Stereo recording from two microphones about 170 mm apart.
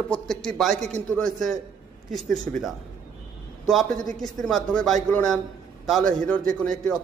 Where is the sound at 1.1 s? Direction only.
Centre (ahead or behind).